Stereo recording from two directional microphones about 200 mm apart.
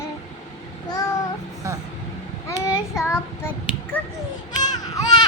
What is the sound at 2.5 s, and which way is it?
Child singing, 15° left (ahead or behind).